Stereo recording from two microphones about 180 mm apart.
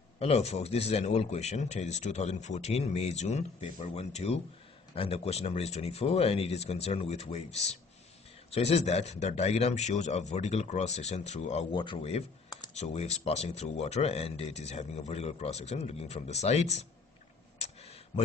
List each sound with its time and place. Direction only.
0.2 s speech: 35° left (ahead or behind)
8.5 s speech: 35° left (ahead or behind)
11.7 s speech: 25° left (ahead or behind)
17.6 s a sound: 35° left (ahead or behind)